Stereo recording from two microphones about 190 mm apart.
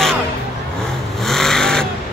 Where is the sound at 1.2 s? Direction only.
Centre (ahead or behind).